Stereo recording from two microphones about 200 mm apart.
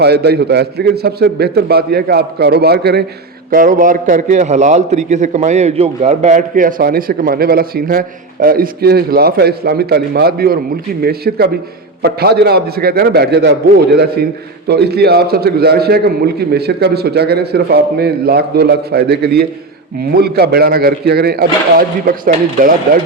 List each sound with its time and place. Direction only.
0.0 s a man's voice: 55° right (ahead or behind)
3.5 s a man's voice: 40° right (ahead or behind)